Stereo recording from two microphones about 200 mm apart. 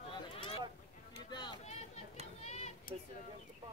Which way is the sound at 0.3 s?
25° left (ahead or behind).